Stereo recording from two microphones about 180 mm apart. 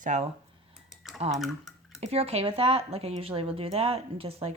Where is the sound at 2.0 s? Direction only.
35° right (ahead or behind).